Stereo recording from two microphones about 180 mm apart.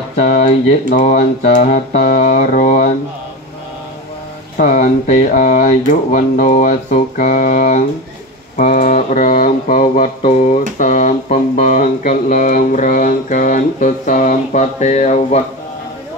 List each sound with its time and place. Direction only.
0.1 s speech: 40° left (ahead or behind)
0.9 s mantra: 40° left (ahead or behind)
4.6 s a sound: 45° left (ahead or behind)